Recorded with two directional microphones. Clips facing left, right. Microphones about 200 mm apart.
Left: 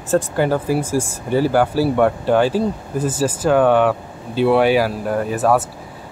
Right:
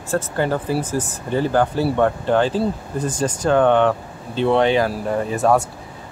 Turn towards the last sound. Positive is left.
turn(degrees=0)  # may be behind; listen again after turning